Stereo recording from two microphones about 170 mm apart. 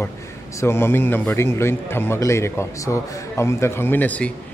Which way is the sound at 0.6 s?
15° left (ahead or behind).